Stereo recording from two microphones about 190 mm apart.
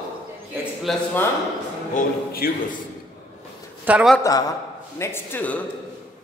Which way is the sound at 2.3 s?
50° left (ahead or behind).